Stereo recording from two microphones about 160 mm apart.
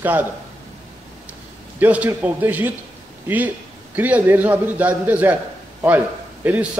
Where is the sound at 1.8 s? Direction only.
10° right (ahead or behind).